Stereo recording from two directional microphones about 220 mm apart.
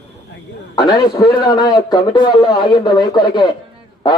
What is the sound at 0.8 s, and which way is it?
A man's voice, 20° left (ahead or behind).